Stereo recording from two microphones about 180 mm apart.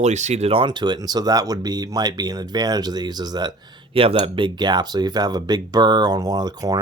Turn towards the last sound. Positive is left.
turn(degrees=-20)  # may be behind; listen again after turning